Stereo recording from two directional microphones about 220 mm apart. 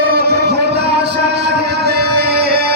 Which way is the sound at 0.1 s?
45° right (ahead or behind).